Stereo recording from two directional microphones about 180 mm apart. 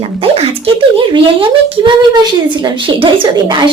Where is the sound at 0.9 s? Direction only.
30° right (ahead or behind).